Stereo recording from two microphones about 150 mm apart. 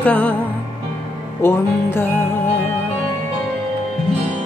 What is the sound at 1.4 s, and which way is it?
Music, 15° left (ahead or behind).